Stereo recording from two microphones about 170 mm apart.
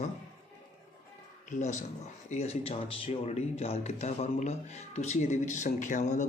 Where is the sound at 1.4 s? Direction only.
45° left (ahead or behind).